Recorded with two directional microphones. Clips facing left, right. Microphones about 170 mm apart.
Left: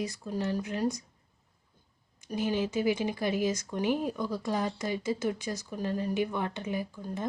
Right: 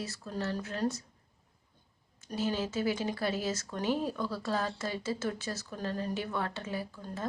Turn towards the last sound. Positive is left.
turn(degrees=15)  # may be behind; listen again after turning